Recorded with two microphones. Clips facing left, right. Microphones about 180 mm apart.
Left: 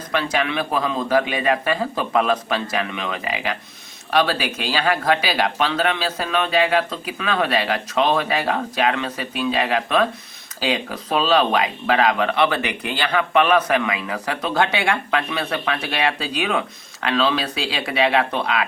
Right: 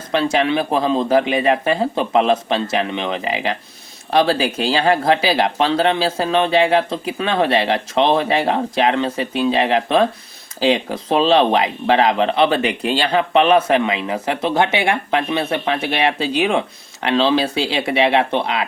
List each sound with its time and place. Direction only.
0.1 s speech: 25° right (ahead or behind)